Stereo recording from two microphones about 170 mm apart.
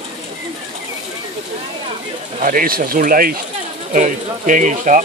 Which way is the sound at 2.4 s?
55° right (ahead or behind).